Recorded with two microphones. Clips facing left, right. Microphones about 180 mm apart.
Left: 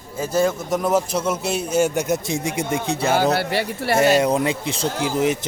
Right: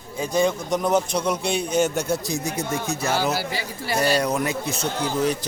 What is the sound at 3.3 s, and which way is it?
Speech, 65° left (ahead or behind).